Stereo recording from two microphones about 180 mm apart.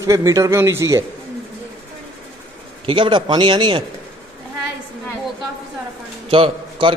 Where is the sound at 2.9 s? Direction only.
25° right (ahead or behind).